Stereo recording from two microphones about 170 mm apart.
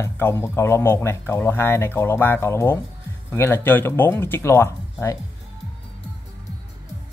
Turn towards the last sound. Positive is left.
turn(degrees=15)  # may be behind; listen again after turning